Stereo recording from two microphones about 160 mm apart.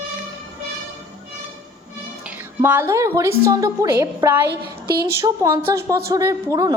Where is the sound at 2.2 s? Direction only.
10° right (ahead or behind).